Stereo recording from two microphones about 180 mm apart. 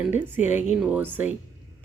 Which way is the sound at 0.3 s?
10° right (ahead or behind).